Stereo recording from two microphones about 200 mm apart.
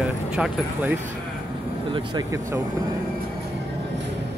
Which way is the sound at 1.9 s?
20° right (ahead or behind).